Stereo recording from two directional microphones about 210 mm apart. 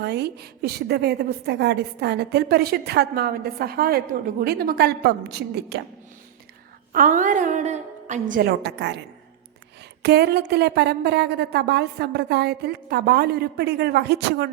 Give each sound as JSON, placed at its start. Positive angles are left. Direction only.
{"t": 0.0, "sound": "a woman's voice", "side_deg": -50}
{"t": 6.9, "sound": "a woman's voice", "side_deg": -40}
{"t": 10.0, "sound": "a woman's voice", "side_deg": -50}